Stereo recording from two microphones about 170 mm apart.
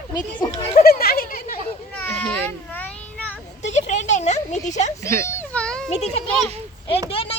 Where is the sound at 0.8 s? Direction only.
60° left (ahead or behind).